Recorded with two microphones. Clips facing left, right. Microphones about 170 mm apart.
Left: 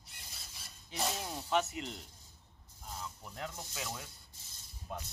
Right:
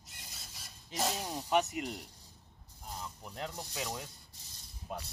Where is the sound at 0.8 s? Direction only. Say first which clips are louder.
Right 2 dB; centre (ahead or behind).